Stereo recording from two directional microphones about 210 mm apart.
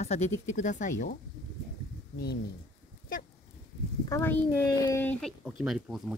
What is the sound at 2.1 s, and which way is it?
Speech, 50° left (ahead or behind).